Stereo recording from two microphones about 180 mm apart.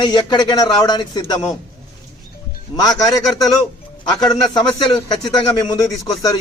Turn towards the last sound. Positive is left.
turn(degrees=20)  # may be behind; listen again after turning